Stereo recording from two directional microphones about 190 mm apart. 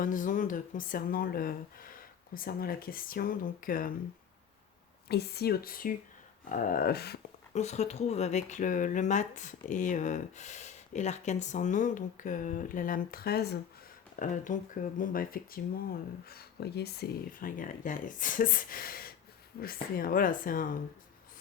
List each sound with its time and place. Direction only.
0.0 s speech: 45° left (ahead or behind)
5.0 s speech: 55° left (ahead or behind)
7.5 s speech: 35° left (ahead or behind); by 13.6 s 55° left (ahead or behind)
14.2 s speech: 40° left (ahead or behind)